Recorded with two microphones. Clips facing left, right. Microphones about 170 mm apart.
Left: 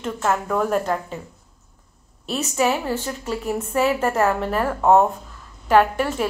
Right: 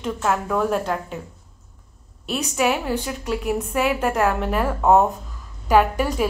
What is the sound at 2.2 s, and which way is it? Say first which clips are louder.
A woman's voice: even; 10° right (ahead or behind).